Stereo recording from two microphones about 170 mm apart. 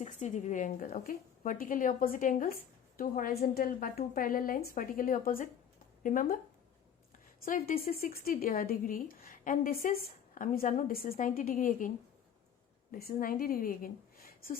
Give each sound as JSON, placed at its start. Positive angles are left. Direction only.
{"t": 0.0, "sound": "a woman's voice", "side_deg": 45}
{"t": 7.4, "sound": "speech", "side_deg": 50}
{"t": 12.9, "sound": "a woman's voice", "side_deg": 60}